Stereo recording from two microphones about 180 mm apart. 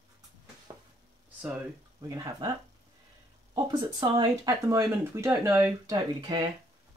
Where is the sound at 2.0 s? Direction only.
20° right (ahead or behind).